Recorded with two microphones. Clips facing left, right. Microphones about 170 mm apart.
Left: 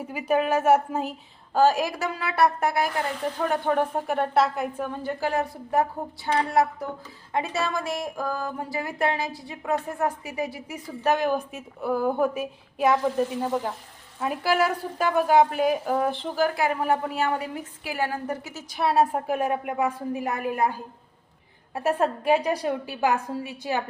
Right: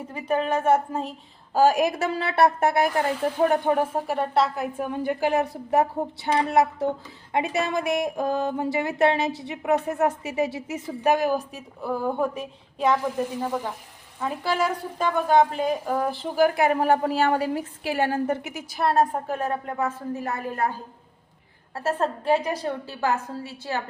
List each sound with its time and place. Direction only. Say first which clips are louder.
0.1 s a woman's voice: left 1 dB; 10° left (ahead or behind)
1.5 s speech: right 2 dB; 15° right (ahead or behind)
3.5 s speech: right 2 dB; 15° right (ahead or behind)
11.0 s a woman's voice: right 1 dB; 10° right (ahead or behind)
16.7 s a woman's voice: right 4 dB; 30° right (ahead or behind)
18.7 s a woman's voice: even; centre (ahead or behind)
21.8 s a woman's voice: left 2 dB; 15° left (ahead or behind)